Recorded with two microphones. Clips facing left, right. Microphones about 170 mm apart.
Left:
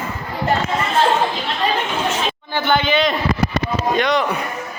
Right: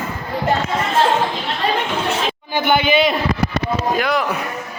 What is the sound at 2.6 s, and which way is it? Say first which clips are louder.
Speech: right 2 dB; 10° right (ahead or behind).